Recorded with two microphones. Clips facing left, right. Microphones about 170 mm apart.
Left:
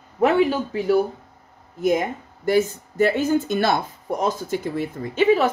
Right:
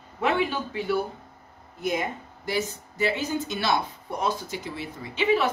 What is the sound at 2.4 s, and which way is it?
Speech, 50° left (ahead or behind).